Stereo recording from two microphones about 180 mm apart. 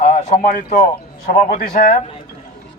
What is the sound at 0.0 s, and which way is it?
A man's voice, 45° left (ahead or behind).